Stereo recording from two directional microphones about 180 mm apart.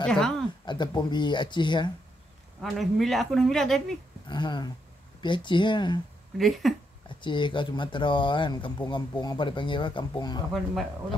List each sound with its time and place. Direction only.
0.0 s speech: 5° left (ahead or behind)
0.7 s speech: 25° left (ahead or behind)
2.6 s speech: centre (ahead or behind)
4.3 s speech: 25° left (ahead or behind)
6.3 s speech: centre (ahead or behind)
7.1 s speech: 25° left (ahead or behind)